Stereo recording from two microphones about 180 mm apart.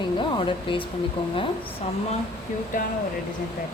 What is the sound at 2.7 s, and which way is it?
Speech, 45° left (ahead or behind).